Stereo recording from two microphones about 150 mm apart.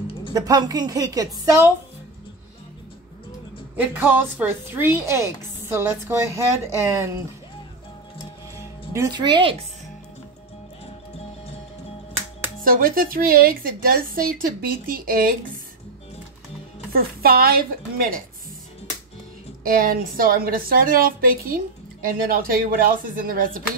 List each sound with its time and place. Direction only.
0.3 s a woman's voice: 25° right (ahead or behind)
3.8 s a woman's voice: 10° right (ahead or behind)
8.9 s speech: 25° right (ahead or behind)
12.6 s a woman's voice: 70° right (ahead or behind)
16.9 s a woman's voice: 80° right
19.6 s a woman's voice: 70° right (ahead or behind)